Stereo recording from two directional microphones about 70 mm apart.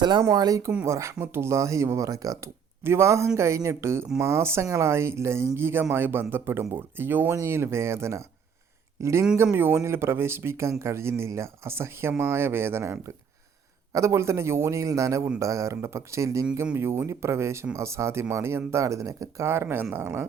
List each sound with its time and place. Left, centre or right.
0.0 s speech: right
0.9 s speech: right
2.8 s speech: right
9.4 s speech: right
19.5 s speech: right